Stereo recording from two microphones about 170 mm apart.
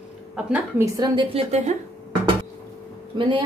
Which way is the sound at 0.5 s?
20° right (ahead or behind).